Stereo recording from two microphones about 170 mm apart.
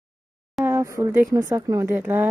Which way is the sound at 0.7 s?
15° right (ahead or behind).